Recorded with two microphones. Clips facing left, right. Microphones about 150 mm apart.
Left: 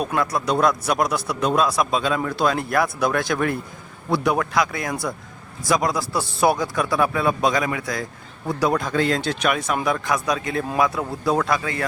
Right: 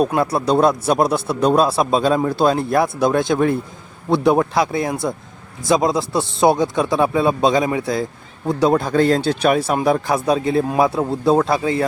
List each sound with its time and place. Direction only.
0.0 s a man's voice: 30° right (ahead or behind)